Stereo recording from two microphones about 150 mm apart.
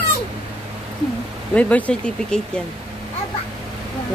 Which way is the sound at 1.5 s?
10° left (ahead or behind).